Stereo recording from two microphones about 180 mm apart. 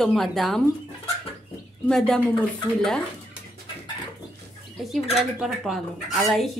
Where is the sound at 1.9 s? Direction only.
5° left (ahead or behind).